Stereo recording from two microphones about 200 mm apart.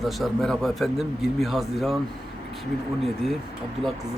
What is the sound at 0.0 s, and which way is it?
Speech, centre (ahead or behind).